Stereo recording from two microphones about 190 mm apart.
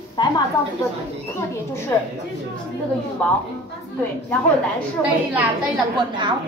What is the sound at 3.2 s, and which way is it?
Speech, 5° left (ahead or behind).